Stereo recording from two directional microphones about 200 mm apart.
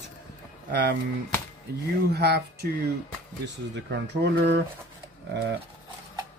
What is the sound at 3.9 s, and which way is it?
Speech, 60° right (ahead or behind).